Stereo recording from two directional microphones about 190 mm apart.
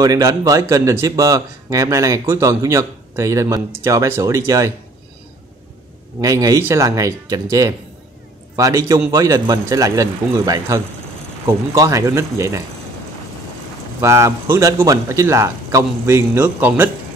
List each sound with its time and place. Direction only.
0.0 s speech: 20° right (ahead or behind)
6.2 s speech: 20° right (ahead or behind)
14.0 s speech: 15° right (ahead or behind)